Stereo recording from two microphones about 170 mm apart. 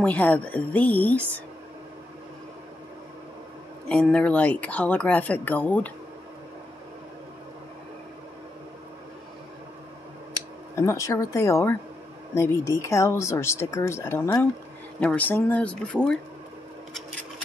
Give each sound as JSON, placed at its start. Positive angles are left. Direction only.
{"t": 0.0, "sound": "speech", "side_deg": 10}
{"t": 3.9, "sound": "speech", "side_deg": 5}
{"t": 10.8, "sound": "speech", "side_deg": 15}